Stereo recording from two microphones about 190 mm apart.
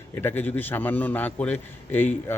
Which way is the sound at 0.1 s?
10° left (ahead or behind).